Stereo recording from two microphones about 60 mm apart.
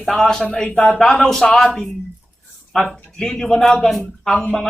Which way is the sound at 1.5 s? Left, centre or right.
Centre.